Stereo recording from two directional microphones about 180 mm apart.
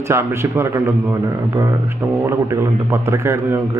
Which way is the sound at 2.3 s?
15° right (ahead or behind).